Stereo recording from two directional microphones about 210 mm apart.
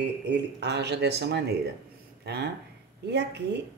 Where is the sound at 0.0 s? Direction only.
55° right (ahead or behind).